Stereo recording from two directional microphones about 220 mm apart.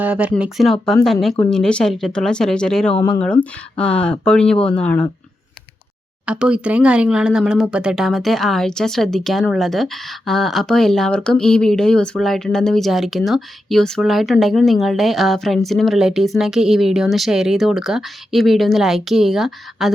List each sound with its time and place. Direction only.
0.0 s speech: 5° right (ahead or behind)
2.9 s speech: 20° left (ahead or behind)
3.8 s speech: 5° left (ahead or behind)
6.2 s speech: 5° right (ahead or behind)